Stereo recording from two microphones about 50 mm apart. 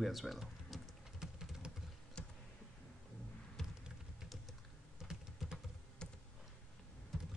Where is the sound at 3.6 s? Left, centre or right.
Centre.